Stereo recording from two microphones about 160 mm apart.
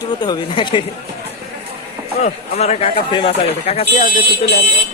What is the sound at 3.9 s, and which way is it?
Speech, 50° left (ahead or behind).